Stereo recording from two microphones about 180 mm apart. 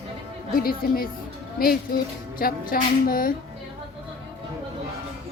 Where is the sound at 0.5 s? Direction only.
55° left (ahead or behind).